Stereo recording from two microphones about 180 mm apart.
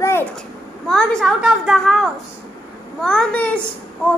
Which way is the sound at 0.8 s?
Centre (ahead or behind).